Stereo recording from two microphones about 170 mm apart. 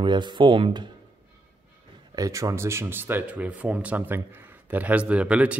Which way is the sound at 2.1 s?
20° right (ahead or behind).